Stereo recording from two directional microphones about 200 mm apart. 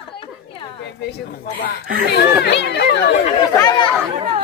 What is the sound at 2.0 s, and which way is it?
Speech, 55° left (ahead or behind).